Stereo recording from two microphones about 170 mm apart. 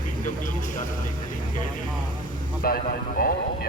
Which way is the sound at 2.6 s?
60° left (ahead or behind).